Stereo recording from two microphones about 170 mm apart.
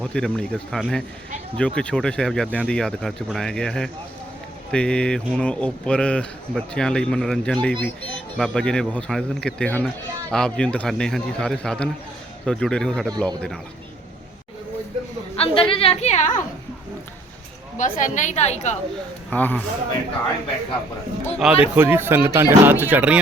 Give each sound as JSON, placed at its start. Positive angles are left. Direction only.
{"t": 0.0, "sound": "speech", "side_deg": 5}
{"t": 15.4, "sound": "a sound", "side_deg": 30}
{"t": 17.7, "sound": "a woman's voice", "side_deg": 50}
{"t": 19.3, "sound": "a man's voice", "side_deg": 10}
{"t": 21.3, "sound": "speech", "side_deg": -5}